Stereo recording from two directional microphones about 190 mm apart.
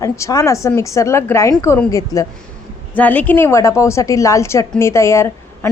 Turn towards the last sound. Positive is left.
turn(degrees=15)  # may be behind; listen again after turning